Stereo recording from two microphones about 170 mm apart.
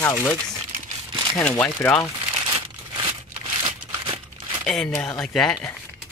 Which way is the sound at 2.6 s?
30° right (ahead or behind).